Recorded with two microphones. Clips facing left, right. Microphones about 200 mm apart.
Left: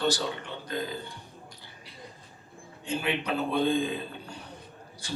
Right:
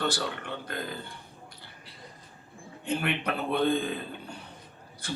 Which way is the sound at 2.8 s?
60° right (ahead or behind).